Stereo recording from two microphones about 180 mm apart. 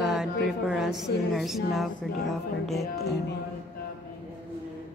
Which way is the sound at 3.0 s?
65° left (ahead or behind).